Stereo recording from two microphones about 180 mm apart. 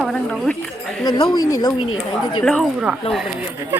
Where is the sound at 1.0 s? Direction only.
20° left (ahead or behind).